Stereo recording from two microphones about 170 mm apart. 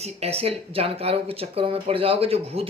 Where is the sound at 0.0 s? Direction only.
35° right (ahead or behind).